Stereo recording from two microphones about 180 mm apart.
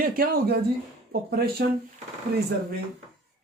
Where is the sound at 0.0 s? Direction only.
55° right (ahead or behind).